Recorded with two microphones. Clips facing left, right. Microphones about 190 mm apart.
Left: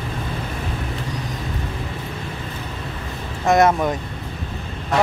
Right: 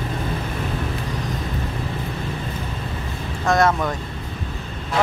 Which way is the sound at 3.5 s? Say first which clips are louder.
Left 3 dB; 20° left (ahead or behind).